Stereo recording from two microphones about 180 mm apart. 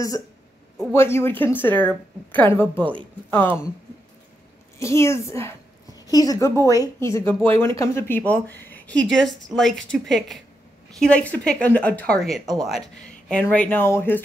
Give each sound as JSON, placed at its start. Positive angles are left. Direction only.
{"t": 0.9, "sound": "a woman's voice", "side_deg": 15}
{"t": 2.8, "sound": "speech", "side_deg": -25}
{"t": 3.3, "sound": "speech", "side_deg": 10}
{"t": 4.7, "sound": "a woman's voice", "side_deg": 15}